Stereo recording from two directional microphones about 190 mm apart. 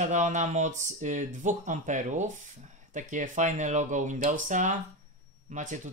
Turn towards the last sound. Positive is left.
turn(degrees=-40)  # may be behind; listen again after turning